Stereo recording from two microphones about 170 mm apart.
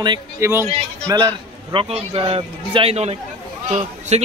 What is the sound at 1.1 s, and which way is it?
A man's voice, 30° right (ahead or behind).